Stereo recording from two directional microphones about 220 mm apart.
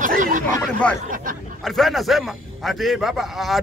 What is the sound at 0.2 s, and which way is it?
Chatter, 35° right (ahead or behind).